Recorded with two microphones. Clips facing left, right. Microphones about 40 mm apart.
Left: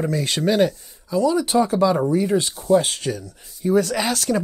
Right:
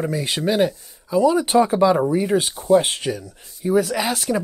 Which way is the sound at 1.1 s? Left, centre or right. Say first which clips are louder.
Right 2 dB; centre.